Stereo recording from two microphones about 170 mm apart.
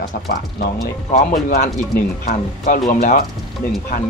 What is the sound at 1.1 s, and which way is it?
Speech, 45° left (ahead or behind).